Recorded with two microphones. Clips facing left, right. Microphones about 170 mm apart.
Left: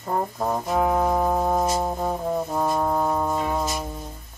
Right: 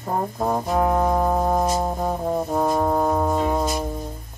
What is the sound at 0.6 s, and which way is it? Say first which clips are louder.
Music: right 1 dB; 5° left (ahead or behind).